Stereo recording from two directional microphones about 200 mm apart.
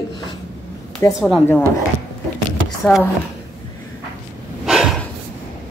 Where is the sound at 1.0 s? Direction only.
15° left (ahead or behind).